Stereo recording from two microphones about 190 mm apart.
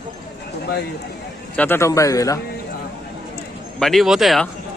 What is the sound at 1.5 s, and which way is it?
Speech, 10° left (ahead or behind).